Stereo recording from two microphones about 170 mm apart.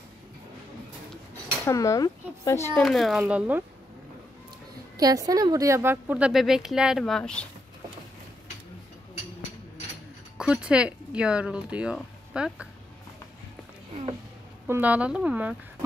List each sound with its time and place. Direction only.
1.7 s speech: 20° left (ahead or behind)
2.8 s speech: centre (ahead or behind)
4.9 s a woman's voice: 20° right (ahead or behind); by 7.4 s 5° left (ahead or behind)
10.3 s speech: 5° right (ahead or behind)
14.7 s a woman's voice: 10° right (ahead or behind)